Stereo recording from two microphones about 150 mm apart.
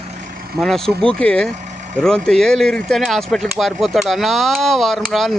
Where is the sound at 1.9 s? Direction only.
5° left (ahead or behind).